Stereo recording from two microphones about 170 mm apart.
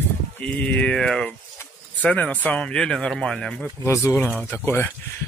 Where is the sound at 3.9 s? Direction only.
15° left (ahead or behind).